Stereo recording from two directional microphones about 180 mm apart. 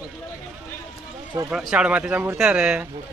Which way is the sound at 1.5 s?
5° right (ahead or behind).